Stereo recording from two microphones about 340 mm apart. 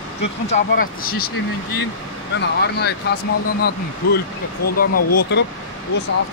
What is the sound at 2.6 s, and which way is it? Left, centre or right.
Speech, left.